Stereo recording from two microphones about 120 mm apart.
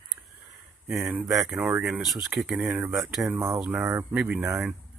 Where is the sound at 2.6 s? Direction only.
15° right (ahead or behind).